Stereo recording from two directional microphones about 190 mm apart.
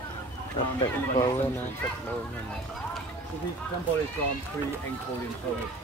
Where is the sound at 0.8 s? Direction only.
20° left (ahead or behind).